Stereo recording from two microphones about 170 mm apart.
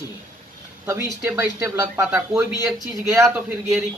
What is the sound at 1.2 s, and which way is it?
Speech, 15° right (ahead or behind).